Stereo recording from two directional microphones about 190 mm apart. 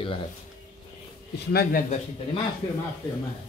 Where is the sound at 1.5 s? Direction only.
55° left (ahead or behind).